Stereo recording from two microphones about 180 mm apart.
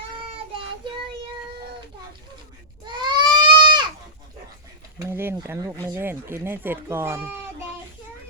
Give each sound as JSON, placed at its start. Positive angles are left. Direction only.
{"t": 2.8, "sound": "goat", "side_deg": -25}
{"t": 4.9, "sound": "speech", "side_deg": -15}